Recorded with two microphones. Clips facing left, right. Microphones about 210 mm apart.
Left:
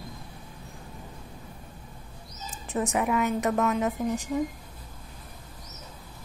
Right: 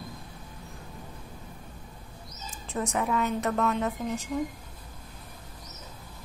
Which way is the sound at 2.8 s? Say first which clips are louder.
Left 2 dB; 15° left (ahead or behind).